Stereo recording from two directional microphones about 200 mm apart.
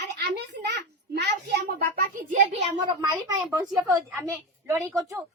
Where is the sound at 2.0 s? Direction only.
45° right (ahead or behind).